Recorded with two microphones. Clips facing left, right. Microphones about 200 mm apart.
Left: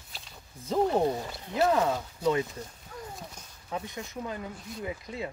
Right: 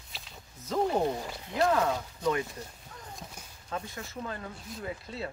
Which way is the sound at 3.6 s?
20° left (ahead or behind).